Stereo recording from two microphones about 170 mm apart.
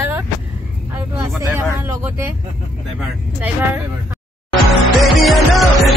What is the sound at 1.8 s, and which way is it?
Speech, 15° right (ahead or behind).